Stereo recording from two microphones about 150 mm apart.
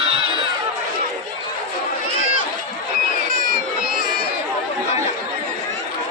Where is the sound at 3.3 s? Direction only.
75° right (ahead or behind).